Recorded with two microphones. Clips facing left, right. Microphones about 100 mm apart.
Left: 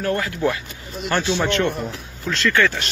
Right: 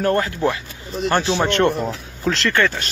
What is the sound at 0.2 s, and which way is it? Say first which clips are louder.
Speech: right 1 dB; 25° right (ahead or behind).